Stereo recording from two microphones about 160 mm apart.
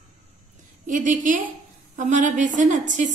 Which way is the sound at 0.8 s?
55° right (ahead or behind).